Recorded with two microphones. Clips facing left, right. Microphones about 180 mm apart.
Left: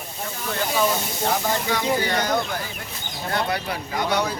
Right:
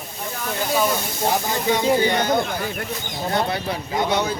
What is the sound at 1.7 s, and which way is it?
Speech, 20° right (ahead or behind).